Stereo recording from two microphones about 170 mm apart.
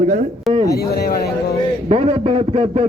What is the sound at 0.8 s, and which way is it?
Speech, 65° left (ahead or behind).